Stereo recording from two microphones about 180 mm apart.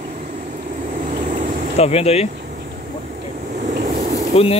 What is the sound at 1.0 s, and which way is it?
Vehicle, 45° right (ahead or behind).